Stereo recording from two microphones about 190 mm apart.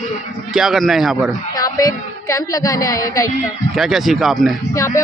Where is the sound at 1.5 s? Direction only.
20° left (ahead or behind).